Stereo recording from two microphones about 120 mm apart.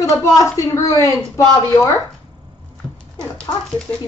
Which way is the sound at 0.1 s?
25° left (ahead or behind).